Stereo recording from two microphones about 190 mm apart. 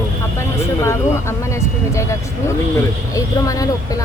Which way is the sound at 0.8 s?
15° left (ahead or behind).